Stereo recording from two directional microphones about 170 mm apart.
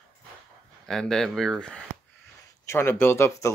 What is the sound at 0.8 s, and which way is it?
Speech, centre (ahead or behind).